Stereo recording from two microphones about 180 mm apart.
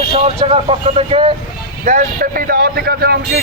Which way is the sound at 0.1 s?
35° right (ahead or behind).